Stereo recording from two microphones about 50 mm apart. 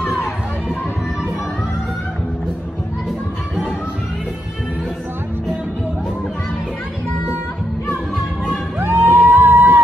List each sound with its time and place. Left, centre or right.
8.7 s music: right